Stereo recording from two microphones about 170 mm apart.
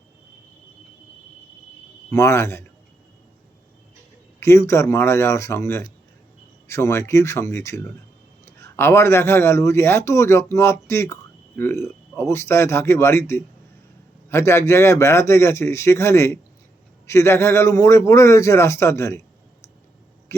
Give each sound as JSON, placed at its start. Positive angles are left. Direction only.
{"t": 2.0, "sound": "a man's voice", "side_deg": 15}
{"t": 4.4, "sound": "a man's voice", "side_deg": 15}